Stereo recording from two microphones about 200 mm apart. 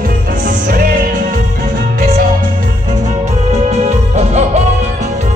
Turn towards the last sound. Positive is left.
turn(degrees=-35)  # may be behind; listen again after turning